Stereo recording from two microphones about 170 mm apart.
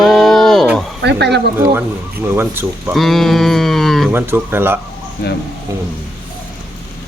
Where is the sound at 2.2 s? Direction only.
15° right (ahead or behind).